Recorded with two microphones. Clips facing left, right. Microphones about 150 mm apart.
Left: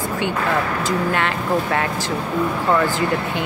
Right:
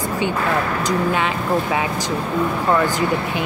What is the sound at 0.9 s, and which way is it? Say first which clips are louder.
Speech: right 1 dB; 15° right (ahead or behind).